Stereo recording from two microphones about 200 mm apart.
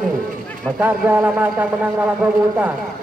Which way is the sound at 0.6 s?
5° right (ahead or behind).